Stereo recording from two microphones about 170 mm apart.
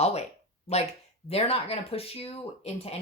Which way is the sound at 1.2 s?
35° left (ahead or behind).